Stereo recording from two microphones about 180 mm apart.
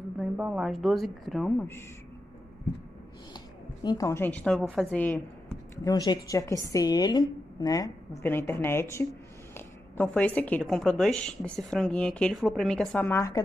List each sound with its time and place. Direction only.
0.2 s a woman's voice: 5° right (ahead or behind)
3.8 s speech: 20° left (ahead or behind)
5.9 s a woman's voice: 20° left (ahead or behind)
10.0 s a woman's voice: 10° left (ahead or behind)